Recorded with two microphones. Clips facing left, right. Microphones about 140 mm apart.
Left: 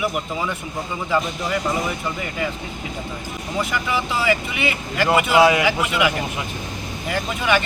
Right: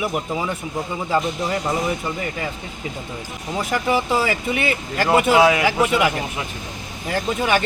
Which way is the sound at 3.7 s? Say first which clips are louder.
Right 7 dB; 40° right (ahead or behind).